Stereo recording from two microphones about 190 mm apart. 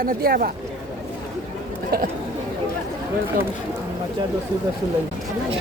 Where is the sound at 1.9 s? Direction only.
50° right (ahead or behind).